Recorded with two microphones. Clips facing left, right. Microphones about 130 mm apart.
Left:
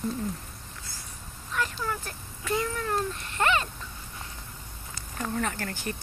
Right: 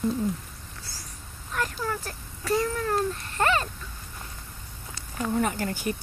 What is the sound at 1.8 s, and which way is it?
Speech, 40° right (ahead or behind).